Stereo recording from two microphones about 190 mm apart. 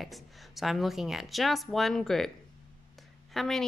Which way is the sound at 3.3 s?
Centre (ahead or behind).